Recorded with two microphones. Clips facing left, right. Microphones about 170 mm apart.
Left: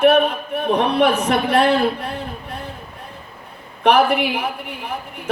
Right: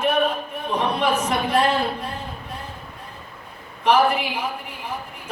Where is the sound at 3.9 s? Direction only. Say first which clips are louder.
Left 3 dB; 65° left (ahead or behind).